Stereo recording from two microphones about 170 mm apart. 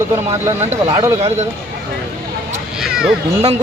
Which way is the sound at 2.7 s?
5° right (ahead or behind).